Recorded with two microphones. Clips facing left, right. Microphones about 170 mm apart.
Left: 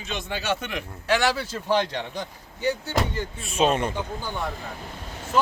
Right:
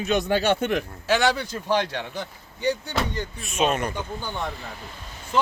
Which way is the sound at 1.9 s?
15° left (ahead or behind).